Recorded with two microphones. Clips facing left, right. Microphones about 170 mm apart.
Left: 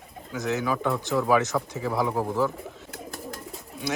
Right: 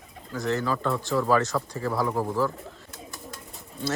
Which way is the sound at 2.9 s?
60° left (ahead or behind).